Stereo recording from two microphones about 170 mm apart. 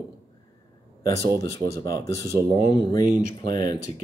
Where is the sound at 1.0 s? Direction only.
20° left (ahead or behind).